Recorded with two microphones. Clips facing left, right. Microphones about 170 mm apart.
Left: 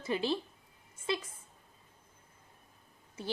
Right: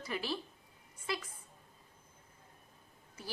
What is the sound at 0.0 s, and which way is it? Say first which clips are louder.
A woman's voice: left 6 dB; 25° left (ahead or behind).